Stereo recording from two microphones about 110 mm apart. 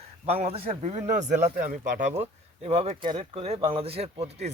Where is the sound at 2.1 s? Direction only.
75° right (ahead or behind).